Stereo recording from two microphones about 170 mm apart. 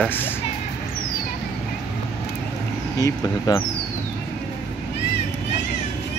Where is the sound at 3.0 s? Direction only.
20° left (ahead or behind).